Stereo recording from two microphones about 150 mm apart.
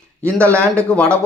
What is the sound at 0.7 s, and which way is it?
Speech, 10° left (ahead or behind).